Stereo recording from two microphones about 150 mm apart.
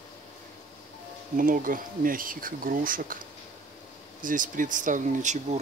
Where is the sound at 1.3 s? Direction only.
65° right (ahead or behind).